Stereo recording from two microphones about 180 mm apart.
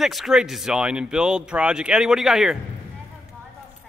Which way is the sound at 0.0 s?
Centre (ahead or behind).